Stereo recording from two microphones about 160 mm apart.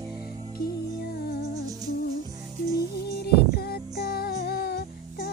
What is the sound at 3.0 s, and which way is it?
Music, 90° left.